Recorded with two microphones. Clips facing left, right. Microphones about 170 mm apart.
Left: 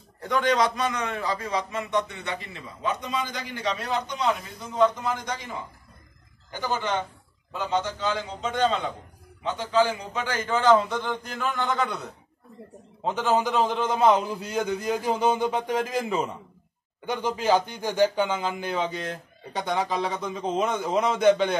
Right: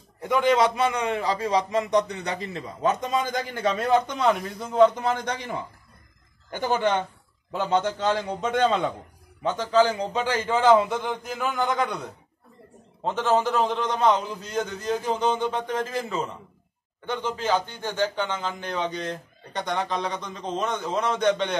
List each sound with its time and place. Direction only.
0.2 s a man's voice: 25° right (ahead or behind); by 5.5 s 65° right (ahead or behind)
6.5 s a man's voice: 55° right (ahead or behind)
9.4 s a man's voice: 40° right (ahead or behind)
10.5 s a man's voice: 20° right (ahead or behind)
13.0 s a man's voice: 5° left (ahead or behind)